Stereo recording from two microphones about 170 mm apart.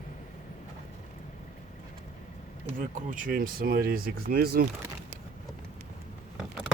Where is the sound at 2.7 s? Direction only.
50° right (ahead or behind).